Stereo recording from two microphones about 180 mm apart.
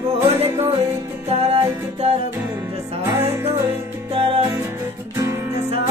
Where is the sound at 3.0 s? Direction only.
15° right (ahead or behind).